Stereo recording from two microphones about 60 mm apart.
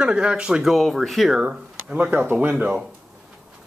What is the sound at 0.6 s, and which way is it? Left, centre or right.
Speech, centre.